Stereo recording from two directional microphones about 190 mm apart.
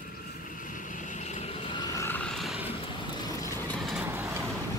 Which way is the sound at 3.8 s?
Centre (ahead or behind).